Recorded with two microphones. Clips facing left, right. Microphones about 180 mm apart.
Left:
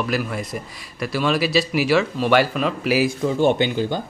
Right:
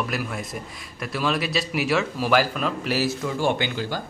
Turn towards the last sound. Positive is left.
turn(degrees=20)  # may be behind; listen again after turning